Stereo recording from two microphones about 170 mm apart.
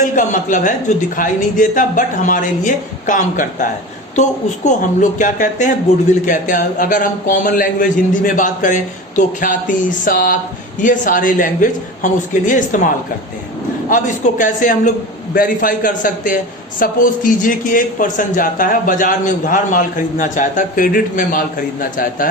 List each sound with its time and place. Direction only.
0.0 s speech: 50° left (ahead or behind)
13.9 s speech: 50° left (ahead or behind)